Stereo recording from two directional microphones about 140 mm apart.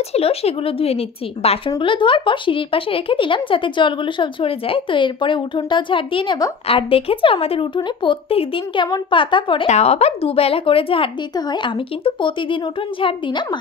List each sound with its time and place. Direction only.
0.1 s a woman's voice: 45° left (ahead or behind)
9.7 s speech: 50° left (ahead or behind); by 13.6 s 35° left (ahead or behind)